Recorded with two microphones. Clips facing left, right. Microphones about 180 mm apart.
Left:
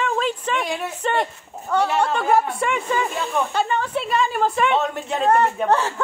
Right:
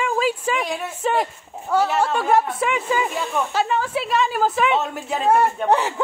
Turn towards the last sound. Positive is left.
turn(degrees=-10)  # may be behind; listen again after turning